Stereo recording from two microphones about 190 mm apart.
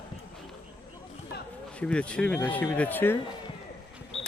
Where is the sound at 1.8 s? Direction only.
5° left (ahead or behind).